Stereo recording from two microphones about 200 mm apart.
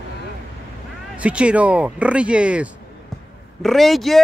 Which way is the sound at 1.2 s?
5° right (ahead or behind).